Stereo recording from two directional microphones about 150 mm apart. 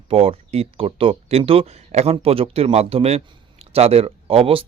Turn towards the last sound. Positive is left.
turn(degrees=-40)  # may be behind; listen again after turning